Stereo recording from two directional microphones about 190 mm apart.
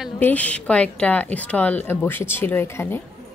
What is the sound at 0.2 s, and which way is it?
A woman's voice, 10° left (ahead or behind).